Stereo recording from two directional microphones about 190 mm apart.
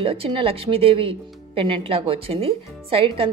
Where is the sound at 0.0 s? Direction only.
30° right (ahead or behind).